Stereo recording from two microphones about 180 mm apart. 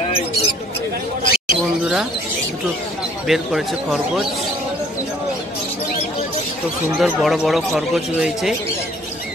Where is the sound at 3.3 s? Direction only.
Centre (ahead or behind).